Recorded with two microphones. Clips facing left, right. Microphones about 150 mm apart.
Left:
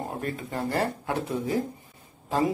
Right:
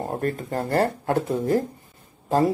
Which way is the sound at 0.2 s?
50° right (ahead or behind).